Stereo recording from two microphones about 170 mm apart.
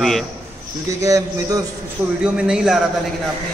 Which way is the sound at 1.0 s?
20° right (ahead or behind).